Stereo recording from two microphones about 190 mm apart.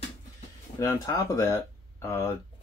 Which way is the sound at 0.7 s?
20° left (ahead or behind).